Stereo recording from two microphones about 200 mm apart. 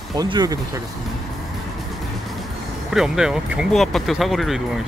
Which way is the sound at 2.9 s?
5° right (ahead or behind).